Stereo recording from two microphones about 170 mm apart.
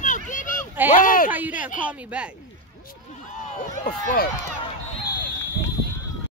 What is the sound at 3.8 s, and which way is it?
Speech, 55° left (ahead or behind).